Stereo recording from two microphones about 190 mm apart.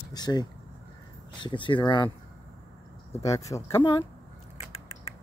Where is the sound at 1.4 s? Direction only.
25° left (ahead or behind).